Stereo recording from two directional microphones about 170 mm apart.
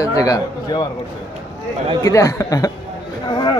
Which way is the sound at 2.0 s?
20° left (ahead or behind).